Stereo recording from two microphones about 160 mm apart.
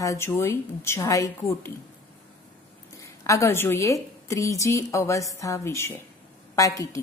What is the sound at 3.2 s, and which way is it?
A woman's voice, 20° left (ahead or behind).